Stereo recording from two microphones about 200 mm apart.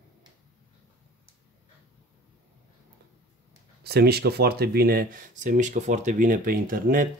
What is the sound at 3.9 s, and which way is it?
Speech, 55° right (ahead or behind).